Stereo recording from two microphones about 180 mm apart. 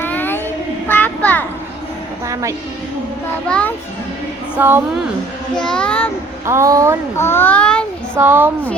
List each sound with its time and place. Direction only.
0.0 s child singing: 10° left (ahead or behind)
0.9 s a sound: 10° left (ahead or behind)
2.2 s a sound: 15° right (ahead or behind)
3.4 s a child's voice: 5° left (ahead or behind)
4.5 s a woman's voice: 10° right (ahead or behind)
5.6 s a child's voice: 5° left (ahead or behind)
6.4 s a woman's voice: 15° right (ahead or behind)
7.2 s a child's voice: 15° left (ahead or behind)
8.1 s a woman's voice: 10° right (ahead or behind)